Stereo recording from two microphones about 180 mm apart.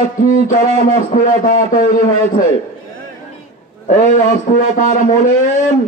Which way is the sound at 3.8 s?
45° left (ahead or behind).